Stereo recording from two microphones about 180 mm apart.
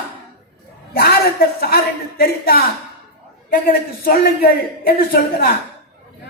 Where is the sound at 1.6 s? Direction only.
60° left (ahead or behind).